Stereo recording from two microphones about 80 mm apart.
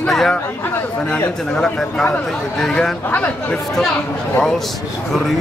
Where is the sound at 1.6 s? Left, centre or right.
Centre.